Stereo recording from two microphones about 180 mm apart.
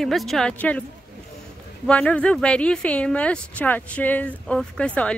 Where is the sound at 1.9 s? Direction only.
5° left (ahead or behind).